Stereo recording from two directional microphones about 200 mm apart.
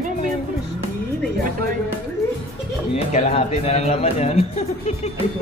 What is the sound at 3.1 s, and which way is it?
Speech, 35° left (ahead or behind).